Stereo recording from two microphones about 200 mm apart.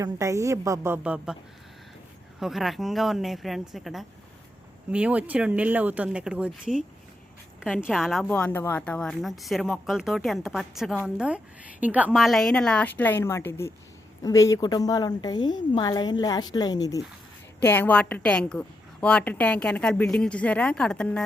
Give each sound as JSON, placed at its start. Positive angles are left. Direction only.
{"t": 0.0, "sound": "speech", "side_deg": -15}
{"t": 2.4, "sound": "a woman's voice", "side_deg": 0}